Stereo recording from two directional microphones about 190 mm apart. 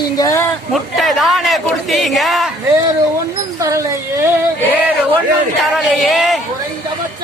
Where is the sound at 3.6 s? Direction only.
15° right (ahead or behind).